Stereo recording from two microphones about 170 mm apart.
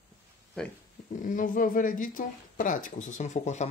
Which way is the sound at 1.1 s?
50° left (ahead or behind).